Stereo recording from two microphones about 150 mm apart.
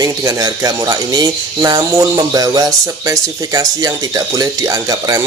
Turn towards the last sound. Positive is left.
turn(degrees=-20)  # may be behind; listen again after turning